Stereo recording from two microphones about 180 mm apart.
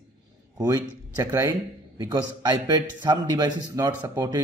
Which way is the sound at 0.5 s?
15° right (ahead or behind).